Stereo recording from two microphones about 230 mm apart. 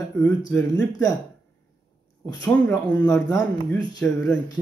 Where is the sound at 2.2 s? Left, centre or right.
Centre.